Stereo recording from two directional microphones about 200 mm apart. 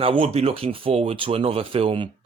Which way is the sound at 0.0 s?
25° right (ahead or behind).